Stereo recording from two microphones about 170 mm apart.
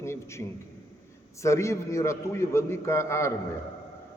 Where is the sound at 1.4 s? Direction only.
15° left (ahead or behind).